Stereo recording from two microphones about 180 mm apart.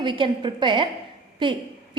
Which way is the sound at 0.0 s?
25° right (ahead or behind).